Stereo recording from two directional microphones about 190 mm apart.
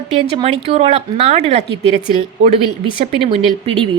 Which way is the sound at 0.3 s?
30° right (ahead or behind).